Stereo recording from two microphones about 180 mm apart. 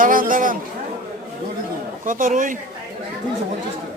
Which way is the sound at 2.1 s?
50° right (ahead or behind).